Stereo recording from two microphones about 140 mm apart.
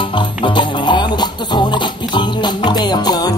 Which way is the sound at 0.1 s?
35° left (ahead or behind).